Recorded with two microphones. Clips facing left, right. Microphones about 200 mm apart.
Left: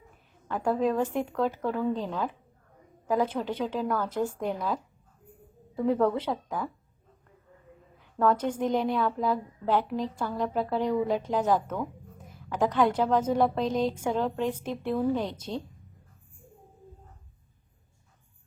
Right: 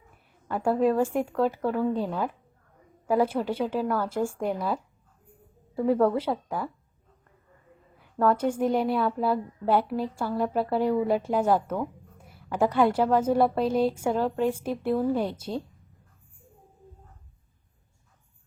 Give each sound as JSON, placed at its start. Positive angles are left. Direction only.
{"t": 0.4, "sound": "a woman's voice", "side_deg": -10}
{"t": 7.9, "sound": "a woman's voice", "side_deg": -5}